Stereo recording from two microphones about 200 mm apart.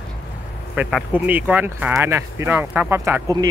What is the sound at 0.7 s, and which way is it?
Speech, 5° right (ahead or behind).